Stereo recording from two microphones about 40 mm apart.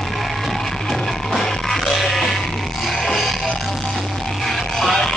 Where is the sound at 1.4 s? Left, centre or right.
Centre.